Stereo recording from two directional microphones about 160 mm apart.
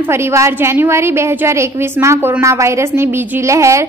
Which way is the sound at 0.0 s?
15° right (ahead or behind).